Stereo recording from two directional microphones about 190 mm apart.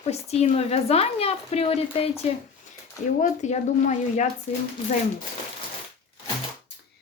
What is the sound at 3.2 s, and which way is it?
Speech, 40° left (ahead or behind).